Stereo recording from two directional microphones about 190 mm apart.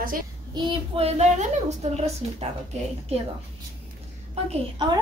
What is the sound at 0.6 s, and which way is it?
Speech, 30° right (ahead or behind).